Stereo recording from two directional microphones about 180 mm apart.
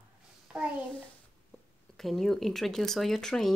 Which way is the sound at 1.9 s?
Centre (ahead or behind).